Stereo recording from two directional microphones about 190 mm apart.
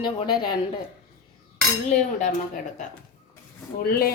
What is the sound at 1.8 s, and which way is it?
Cutlery, 40° left (ahead or behind).